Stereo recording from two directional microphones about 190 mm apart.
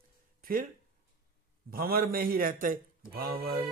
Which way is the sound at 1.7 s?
50° right (ahead or behind).